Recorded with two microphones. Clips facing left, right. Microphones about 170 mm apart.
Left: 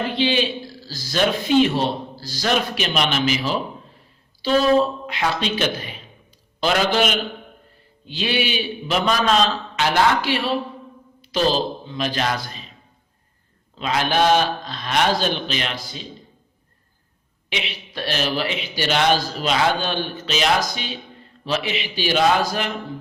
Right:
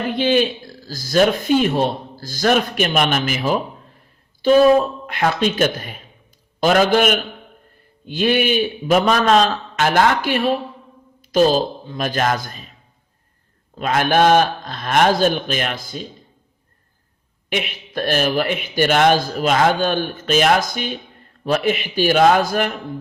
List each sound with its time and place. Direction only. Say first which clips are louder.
0.2 s a man's voice: right 5 dB; 50° right (ahead or behind)
13.7 s a man's voice: right 4 dB; 50° right (ahead or behind)
17.5 s a man's voice: right 6 dB; 50° right (ahead or behind)